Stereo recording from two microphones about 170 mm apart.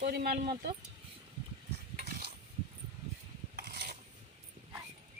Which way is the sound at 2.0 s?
70° right (ahead or behind).